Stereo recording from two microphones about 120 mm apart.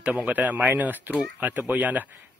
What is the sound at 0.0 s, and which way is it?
Speech, 10° right (ahead or behind).